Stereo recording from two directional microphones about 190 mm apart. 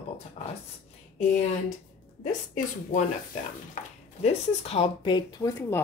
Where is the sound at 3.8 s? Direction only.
40° left (ahead or behind).